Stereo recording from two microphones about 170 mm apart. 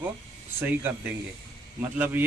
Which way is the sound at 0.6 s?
10° right (ahead or behind).